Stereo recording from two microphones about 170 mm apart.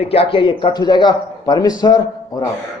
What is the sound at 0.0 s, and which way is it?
A man's voice, 35° left (ahead or behind).